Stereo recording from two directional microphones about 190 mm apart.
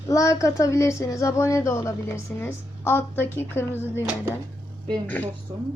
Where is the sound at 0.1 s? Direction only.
15° left (ahead or behind).